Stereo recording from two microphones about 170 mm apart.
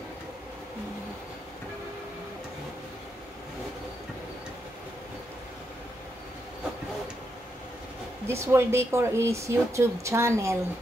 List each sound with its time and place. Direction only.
8.3 s speech: 15° right (ahead or behind)